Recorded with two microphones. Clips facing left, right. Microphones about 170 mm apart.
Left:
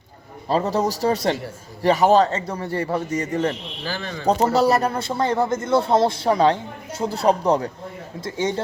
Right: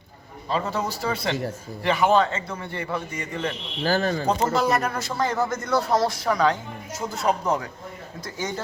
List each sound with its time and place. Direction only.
0.4 s a man's voice: 40° left (ahead or behind)
3.8 s speech: 45° right (ahead or behind)
4.5 s a man's voice: 35° left (ahead or behind)